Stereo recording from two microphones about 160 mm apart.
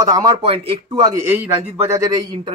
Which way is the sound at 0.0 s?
25° right (ahead or behind).